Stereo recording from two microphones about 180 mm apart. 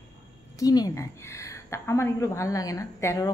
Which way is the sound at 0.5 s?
20° left (ahead or behind).